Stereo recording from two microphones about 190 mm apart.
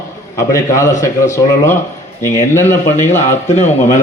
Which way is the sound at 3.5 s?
40° left (ahead or behind).